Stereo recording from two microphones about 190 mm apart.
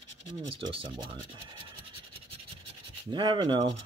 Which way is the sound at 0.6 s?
25° right (ahead or behind).